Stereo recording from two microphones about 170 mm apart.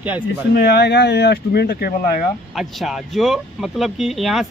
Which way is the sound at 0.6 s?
75° left (ahead or behind).